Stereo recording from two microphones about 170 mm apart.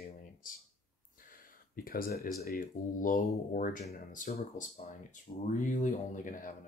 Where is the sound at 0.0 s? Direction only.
55° left (ahead or behind).